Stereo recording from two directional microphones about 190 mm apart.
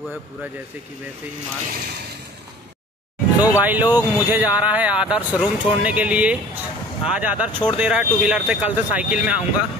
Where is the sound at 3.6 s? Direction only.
10° right (ahead or behind).